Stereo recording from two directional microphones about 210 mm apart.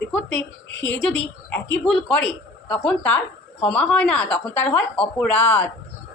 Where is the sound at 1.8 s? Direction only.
5° left (ahead or behind).